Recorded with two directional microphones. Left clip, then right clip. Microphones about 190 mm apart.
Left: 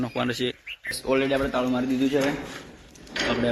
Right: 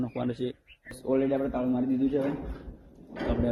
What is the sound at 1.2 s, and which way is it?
Speech, 30° left (ahead or behind).